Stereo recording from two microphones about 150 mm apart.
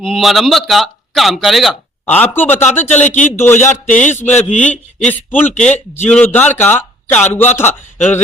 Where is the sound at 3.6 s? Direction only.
55° left (ahead or behind).